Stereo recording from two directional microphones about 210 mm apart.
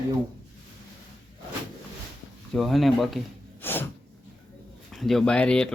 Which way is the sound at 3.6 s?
10° left (ahead or behind).